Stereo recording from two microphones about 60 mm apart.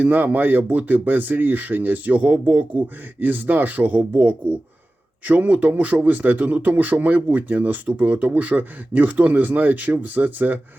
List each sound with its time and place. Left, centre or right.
0.0 s speech: right